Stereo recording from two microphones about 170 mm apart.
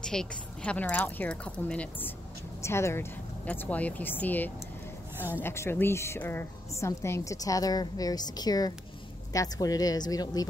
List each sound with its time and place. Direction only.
0.0 s a woman's voice: 5° left (ahead or behind)
5.1 s a woman's voice: 10° right (ahead or behind)
5.4 s a woman's voice: 15° left (ahead or behind)